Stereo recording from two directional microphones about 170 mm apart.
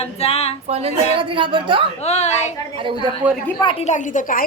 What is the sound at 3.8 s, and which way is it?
Speech, 45° left (ahead or behind).